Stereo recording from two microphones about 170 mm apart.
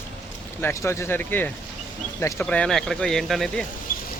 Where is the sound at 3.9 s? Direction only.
55° left (ahead or behind).